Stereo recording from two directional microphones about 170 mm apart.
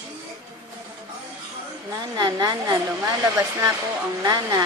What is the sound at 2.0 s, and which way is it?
Speech, 20° right (ahead or behind).